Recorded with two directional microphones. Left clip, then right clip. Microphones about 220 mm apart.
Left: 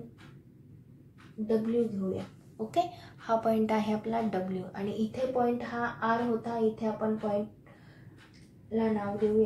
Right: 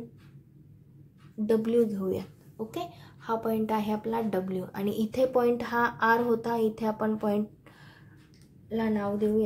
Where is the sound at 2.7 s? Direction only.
25° right (ahead or behind).